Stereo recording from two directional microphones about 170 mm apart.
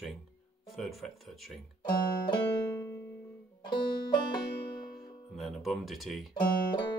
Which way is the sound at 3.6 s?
30° left (ahead or behind).